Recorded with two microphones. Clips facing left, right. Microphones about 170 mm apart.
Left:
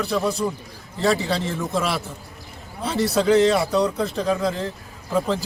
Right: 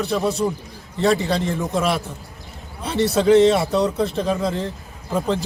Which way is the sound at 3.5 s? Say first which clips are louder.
Right 1 dB; centre (ahead or behind).